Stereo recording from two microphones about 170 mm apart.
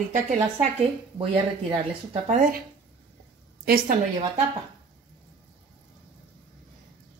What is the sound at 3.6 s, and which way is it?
Speech, 60° right (ahead or behind).